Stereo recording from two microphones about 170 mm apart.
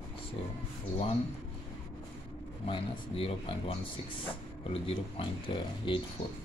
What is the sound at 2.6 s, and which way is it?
Speech, 30° left (ahead or behind).